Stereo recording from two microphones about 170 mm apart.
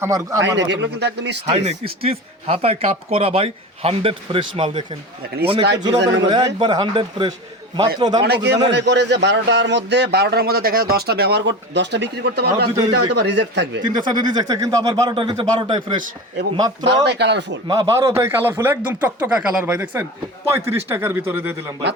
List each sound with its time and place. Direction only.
0.0 s speech: 20° right (ahead or behind)
0.4 s speech: 90° right
1.5 s speech: 35° right (ahead or behind)
6.2 s speech: 25° right (ahead or behind)
8.2 s a man's voice: 75° right (ahead or behind)
8.7 s a man's voice: 90° right; by 12.6 s 75° right (ahead or behind)
12.9 s speech: 85° right
13.8 s speech: 25° right (ahead or behind)
17.0 s speech: 85° right
17.7 s speech: 20° right (ahead or behind)